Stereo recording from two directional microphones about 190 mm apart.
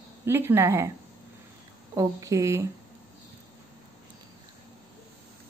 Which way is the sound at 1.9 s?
15° right (ahead or behind).